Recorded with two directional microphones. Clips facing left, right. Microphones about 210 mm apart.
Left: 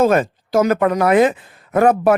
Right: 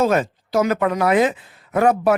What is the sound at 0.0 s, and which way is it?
Speech, 50° left (ahead or behind).